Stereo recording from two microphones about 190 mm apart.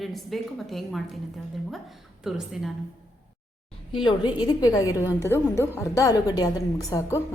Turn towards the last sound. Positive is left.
turn(degrees=15)  # may be behind; listen again after turning